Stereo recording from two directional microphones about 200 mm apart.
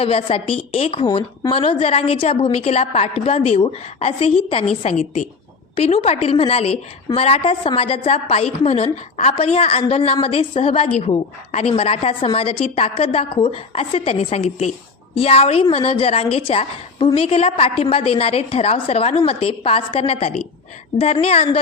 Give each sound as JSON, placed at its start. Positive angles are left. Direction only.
{"t": 0.0, "sound": "a woman's voice", "side_deg": 30}